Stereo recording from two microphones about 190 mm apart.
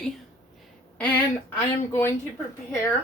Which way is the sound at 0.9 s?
5° left (ahead or behind).